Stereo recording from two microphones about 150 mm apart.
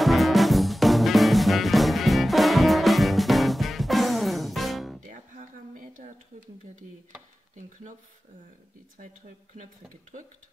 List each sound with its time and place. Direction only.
0.0 s music: centre (ahead or behind)
5.0 s a sound: 60° right (ahead or behind)
10.1 s speech: 55° right (ahead or behind)